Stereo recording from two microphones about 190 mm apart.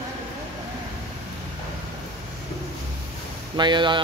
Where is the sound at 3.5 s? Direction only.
25° right (ahead or behind).